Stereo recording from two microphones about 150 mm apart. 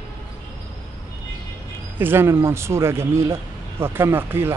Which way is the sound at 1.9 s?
15° right (ahead or behind).